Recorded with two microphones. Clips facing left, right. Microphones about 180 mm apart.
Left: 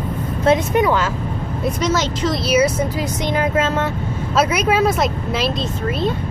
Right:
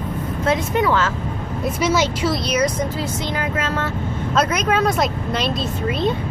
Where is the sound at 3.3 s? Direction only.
25° left (ahead or behind).